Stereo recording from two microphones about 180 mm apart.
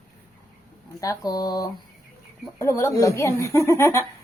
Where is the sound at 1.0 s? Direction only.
20° left (ahead or behind).